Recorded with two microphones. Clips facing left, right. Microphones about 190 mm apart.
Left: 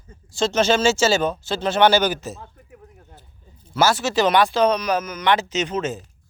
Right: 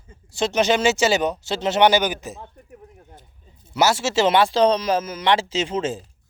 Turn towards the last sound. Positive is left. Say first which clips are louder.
# even
turn(degrees=-30)  # may be behind; listen again after turning